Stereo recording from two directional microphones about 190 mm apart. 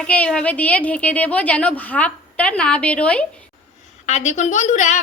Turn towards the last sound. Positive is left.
turn(degrees=40)  # may be behind; listen again after turning